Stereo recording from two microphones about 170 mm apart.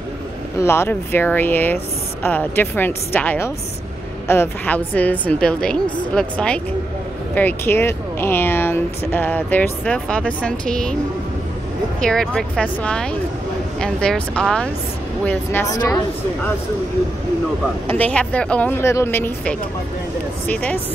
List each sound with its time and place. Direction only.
0.6 s speech: 15° left (ahead or behind)
12.0 s speech: 5° left (ahead or behind); by 16.0 s 20° left (ahead or behind)
17.8 s speech: 10° left (ahead or behind)